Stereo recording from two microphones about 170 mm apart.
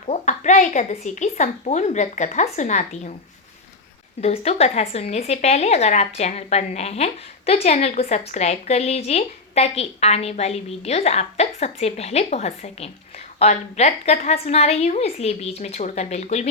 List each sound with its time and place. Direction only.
0.1 s a sound: 45° left (ahead or behind)
1.0 s a woman's voice: 45° left (ahead or behind)
4.2 s a woman's voice: 35° left (ahead or behind)